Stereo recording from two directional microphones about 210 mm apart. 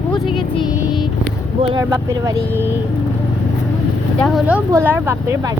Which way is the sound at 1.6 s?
20° right (ahead or behind).